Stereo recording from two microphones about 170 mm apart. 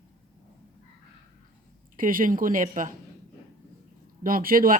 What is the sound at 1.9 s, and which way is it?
Speech, 55° right (ahead or behind).